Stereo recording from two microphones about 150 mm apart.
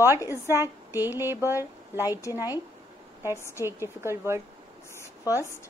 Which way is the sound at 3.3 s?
20° left (ahead or behind).